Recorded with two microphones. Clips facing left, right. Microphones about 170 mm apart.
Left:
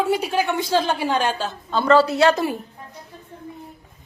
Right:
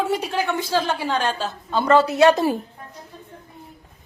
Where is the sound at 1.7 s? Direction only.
20° right (ahead or behind).